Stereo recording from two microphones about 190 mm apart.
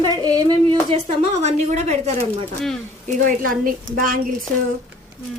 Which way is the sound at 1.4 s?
35° right (ahead or behind).